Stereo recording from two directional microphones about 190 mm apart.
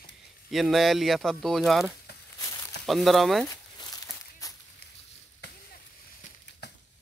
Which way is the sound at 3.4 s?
20° left (ahead or behind).